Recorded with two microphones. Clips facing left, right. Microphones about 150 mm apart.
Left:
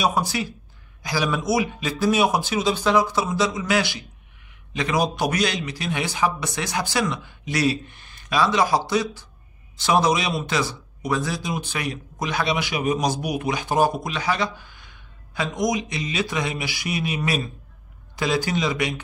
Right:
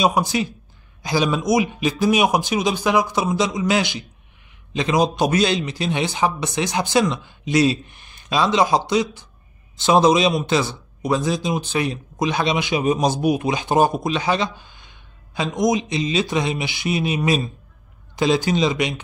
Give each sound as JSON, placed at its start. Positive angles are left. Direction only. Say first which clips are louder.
{"t": 0.0, "sound": "a man's voice", "louder": "right 4 dB", "side_deg": -20}